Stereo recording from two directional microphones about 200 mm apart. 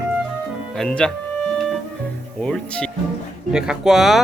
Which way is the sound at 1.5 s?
Centre (ahead or behind).